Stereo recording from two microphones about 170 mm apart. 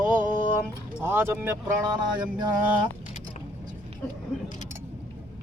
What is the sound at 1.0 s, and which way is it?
Speech, 15° right (ahead or behind).